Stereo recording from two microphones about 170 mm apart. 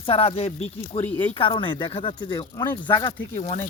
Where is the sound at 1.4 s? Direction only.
30° left (ahead or behind).